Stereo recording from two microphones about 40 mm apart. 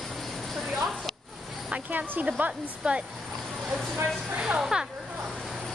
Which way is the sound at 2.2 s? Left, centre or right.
Right.